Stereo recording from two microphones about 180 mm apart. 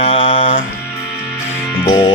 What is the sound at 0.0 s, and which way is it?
Music, 30° left (ahead or behind).